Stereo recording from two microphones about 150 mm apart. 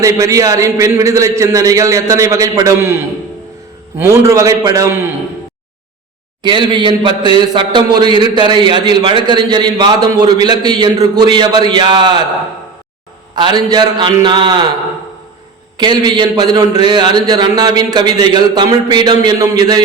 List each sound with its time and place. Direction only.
0.0 s a man's voice: 20° right (ahead or behind)
6.4 s a man's voice: 30° right (ahead or behind)
13.3 s a man's voice: 30° right (ahead or behind)
15.8 s a man's voice: 30° right (ahead or behind)